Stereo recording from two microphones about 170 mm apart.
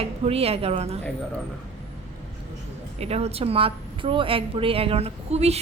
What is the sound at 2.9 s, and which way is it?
A woman's voice, 40° right (ahead or behind).